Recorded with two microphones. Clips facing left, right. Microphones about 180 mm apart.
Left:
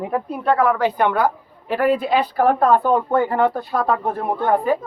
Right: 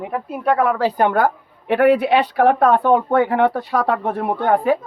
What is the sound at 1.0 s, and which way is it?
A woman's voice, 50° right (ahead or behind).